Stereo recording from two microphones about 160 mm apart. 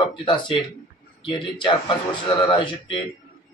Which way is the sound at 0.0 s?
30° left (ahead or behind).